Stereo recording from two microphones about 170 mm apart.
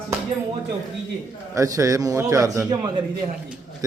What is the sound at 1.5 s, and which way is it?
A man's voice, 20° right (ahead or behind).